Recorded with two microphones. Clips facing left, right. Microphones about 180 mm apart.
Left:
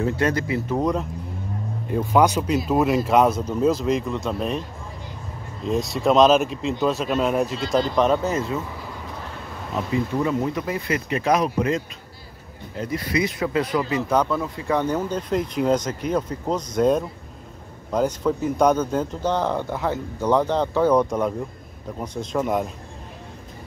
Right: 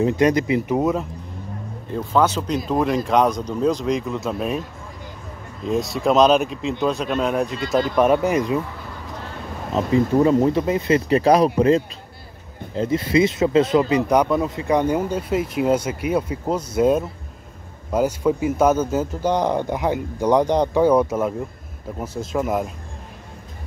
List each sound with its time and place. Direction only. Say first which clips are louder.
0.0 s speech: right 5 dB; 15° right (ahead or behind)
1.9 s speech: left 1 dB; 10° left (ahead or behind); by 4.6 s 5° right (ahead or behind)
5.7 s speech: right 1 dB; centre (ahead or behind)
7.9 s speech: right 3 dB; 10° right (ahead or behind)
10.1 s speech: right 9 dB; 30° right (ahead or behind)
11.1 s speech: right 5 dB; 35° right (ahead or behind); by 22.7 s centre (ahead or behind)